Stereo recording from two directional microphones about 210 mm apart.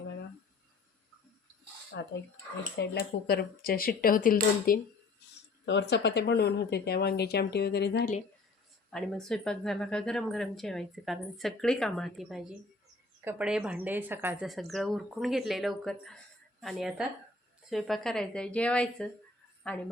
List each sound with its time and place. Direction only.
1.9 s speech: 50° left (ahead or behind)
5.6 s speech: 55° left (ahead or behind)
8.9 s speech: centre (ahead or behind)